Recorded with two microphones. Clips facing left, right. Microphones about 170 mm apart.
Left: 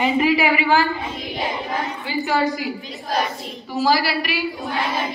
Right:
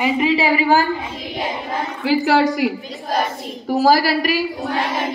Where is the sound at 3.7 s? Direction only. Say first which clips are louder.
Right 5 dB; 45° right (ahead or behind).